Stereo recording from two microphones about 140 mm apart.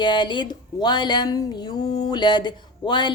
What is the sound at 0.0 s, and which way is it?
Speech, 35° left (ahead or behind).